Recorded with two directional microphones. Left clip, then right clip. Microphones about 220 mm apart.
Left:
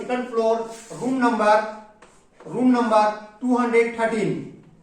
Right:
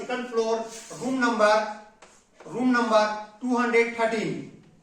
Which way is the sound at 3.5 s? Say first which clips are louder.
Left 3 dB; 10° right (ahead or behind).